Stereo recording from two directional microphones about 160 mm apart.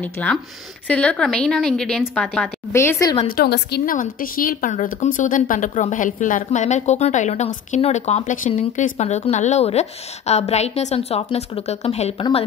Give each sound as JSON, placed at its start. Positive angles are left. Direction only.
{"t": 0.0, "sound": "a woman's voice", "side_deg": 10}
{"t": 2.7, "sound": "speech", "side_deg": 15}
{"t": 3.3, "sound": "a woman's voice", "side_deg": 80}